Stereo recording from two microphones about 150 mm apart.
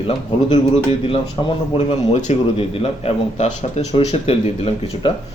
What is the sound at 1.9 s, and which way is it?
Speech, 50° left (ahead or behind).